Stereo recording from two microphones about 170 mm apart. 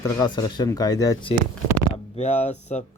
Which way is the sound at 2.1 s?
40° left (ahead or behind).